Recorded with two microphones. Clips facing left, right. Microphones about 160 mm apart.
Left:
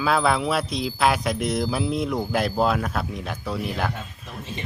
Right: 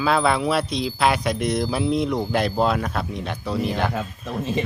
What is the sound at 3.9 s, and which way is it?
Speech, 90° right.